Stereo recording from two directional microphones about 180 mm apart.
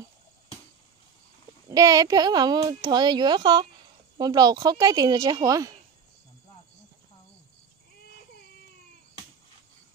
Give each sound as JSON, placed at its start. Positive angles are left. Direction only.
{"t": 1.7, "sound": "a child's voice", "side_deg": -20}